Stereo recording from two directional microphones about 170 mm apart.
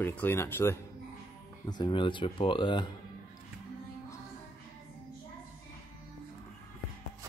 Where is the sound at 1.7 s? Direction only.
25° left (ahead or behind).